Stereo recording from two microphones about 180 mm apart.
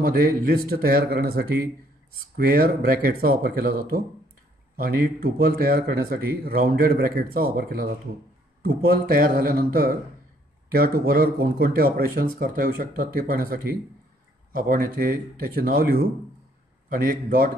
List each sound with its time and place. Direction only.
0.0 s speech: 55° right (ahead or behind)